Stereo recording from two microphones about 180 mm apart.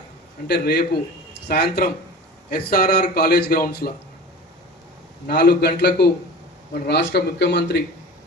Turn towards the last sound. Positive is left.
turn(degrees=75)  # may be behind; listen again after turning